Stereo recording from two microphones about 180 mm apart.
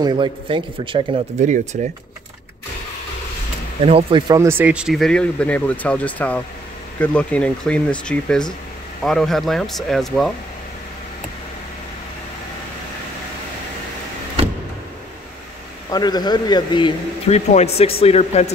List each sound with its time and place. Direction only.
0.0 s speech: 25° right (ahead or behind)
1.4 s speech: 40° right (ahead or behind)
3.8 s speech: 30° right (ahead or behind); by 10.3 s centre (ahead or behind)
15.9 s speech: 20° left (ahead or behind)
17.3 s speech: 40° left (ahead or behind)